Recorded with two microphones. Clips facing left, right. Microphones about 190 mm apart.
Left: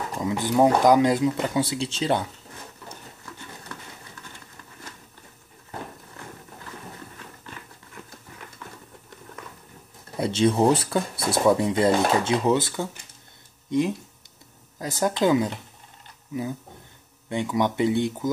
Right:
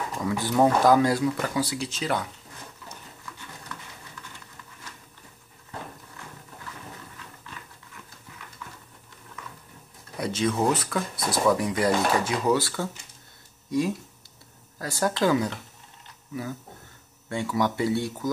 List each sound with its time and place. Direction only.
0.2 s speech: 20° left (ahead or behind)
10.1 s speech: 30° left (ahead or behind)
17.3 s speech: 20° left (ahead or behind)